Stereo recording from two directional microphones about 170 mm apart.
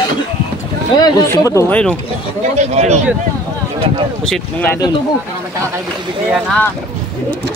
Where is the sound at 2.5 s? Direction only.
40° right (ahead or behind).